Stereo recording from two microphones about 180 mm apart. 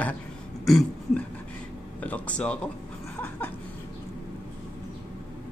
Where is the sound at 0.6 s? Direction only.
Centre (ahead or behind).